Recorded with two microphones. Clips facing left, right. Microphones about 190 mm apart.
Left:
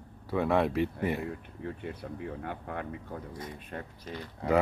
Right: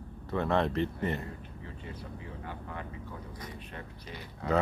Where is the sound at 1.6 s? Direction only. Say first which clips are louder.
Left 7 dB; 60° left (ahead or behind).